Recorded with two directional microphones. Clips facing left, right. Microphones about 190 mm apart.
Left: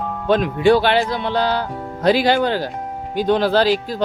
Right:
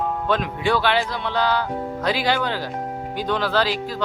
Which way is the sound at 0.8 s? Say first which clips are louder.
Left 4 dB; 55° left (ahead or behind).